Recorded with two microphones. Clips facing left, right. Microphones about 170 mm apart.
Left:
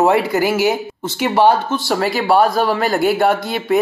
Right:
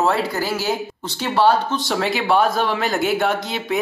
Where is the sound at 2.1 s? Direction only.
45° left (ahead or behind).